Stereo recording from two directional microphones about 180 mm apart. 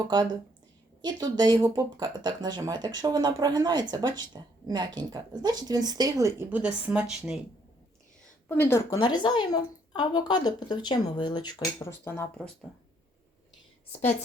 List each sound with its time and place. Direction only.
1.0 s speech: 20° right (ahead or behind)
6.6 s speech: 5° right (ahead or behind)
8.4 s a woman's voice: 10° left (ahead or behind)
9.0 s a woman's voice: 25° left (ahead or behind)